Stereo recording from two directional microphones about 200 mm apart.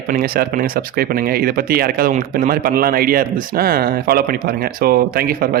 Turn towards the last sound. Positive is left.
turn(degrees=-50)  # may be behind; listen again after turning